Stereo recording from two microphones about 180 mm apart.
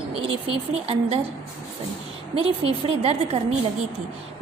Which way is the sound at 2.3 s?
30° right (ahead or behind).